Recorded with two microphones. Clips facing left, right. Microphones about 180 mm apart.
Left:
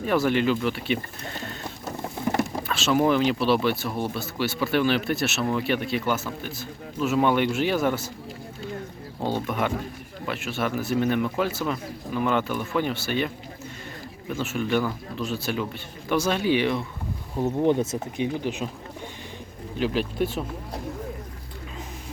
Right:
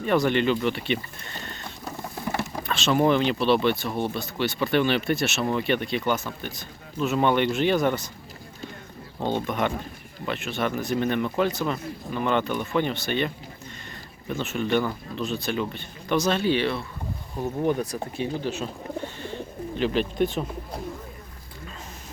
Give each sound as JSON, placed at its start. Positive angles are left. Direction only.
{"t": 0.0, "sound": "speech", "side_deg": 5}
{"t": 2.4, "sound": "speech", "side_deg": 5}
{"t": 9.2, "sound": "speech", "side_deg": 5}
{"t": 19.8, "sound": "speech", "side_deg": 5}